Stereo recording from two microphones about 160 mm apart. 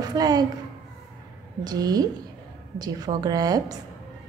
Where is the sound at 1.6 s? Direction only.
25° right (ahead or behind).